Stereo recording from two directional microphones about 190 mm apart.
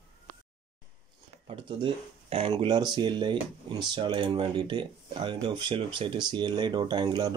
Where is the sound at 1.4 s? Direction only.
30° right (ahead or behind).